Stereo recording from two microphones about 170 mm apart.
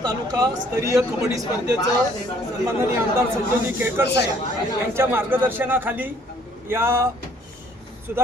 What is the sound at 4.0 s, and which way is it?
Speech, 85° left.